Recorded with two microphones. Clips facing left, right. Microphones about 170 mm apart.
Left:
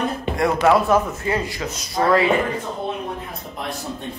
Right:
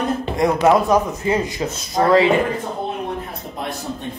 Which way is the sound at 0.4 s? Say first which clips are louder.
Right 2 dB; 20° right (ahead or behind).